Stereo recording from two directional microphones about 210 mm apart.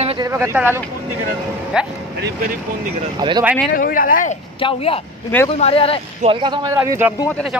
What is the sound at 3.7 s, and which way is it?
Speech, 40° left (ahead or behind).